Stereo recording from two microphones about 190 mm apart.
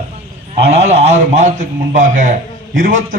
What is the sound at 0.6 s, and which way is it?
A man's voice, 35° right (ahead or behind).